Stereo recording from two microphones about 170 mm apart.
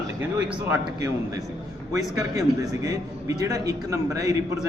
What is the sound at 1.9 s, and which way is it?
A man's voice, 20° right (ahead or behind).